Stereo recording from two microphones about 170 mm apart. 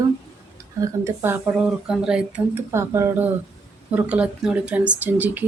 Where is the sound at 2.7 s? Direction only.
15° right (ahead or behind).